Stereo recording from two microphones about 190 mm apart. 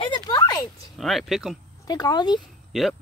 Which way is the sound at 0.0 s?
20° left (ahead or behind).